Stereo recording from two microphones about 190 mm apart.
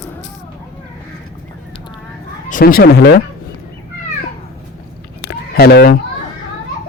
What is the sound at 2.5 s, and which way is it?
Speech, 45° left (ahead or behind).